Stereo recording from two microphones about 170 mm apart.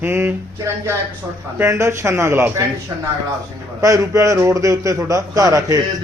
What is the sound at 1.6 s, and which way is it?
A man's voice, 15° right (ahead or behind).